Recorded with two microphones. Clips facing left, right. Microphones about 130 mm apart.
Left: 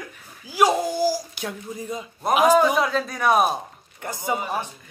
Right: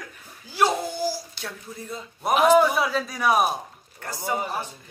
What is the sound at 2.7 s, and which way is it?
Speech, 5° right (ahead or behind).